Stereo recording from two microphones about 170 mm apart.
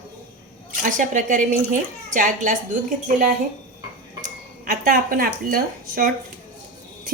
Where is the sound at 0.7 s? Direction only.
50° right (ahead or behind).